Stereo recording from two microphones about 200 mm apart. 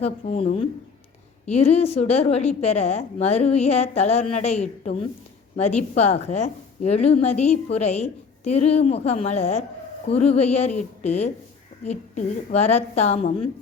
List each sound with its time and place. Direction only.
0.0 s a woman's voice: 30° left (ahead or behind)